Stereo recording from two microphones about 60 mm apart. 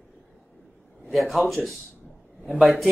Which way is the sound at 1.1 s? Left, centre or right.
Centre.